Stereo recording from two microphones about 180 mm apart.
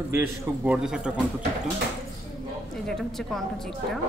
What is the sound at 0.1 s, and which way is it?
Speech, 10° right (ahead or behind).